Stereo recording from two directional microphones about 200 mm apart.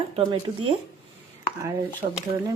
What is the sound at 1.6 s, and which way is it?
Speech, 15° right (ahead or behind).